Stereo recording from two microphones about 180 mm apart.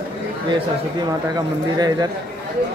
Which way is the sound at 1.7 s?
20° right (ahead or behind).